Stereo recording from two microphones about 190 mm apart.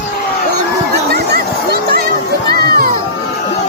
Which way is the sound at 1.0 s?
55° right (ahead or behind).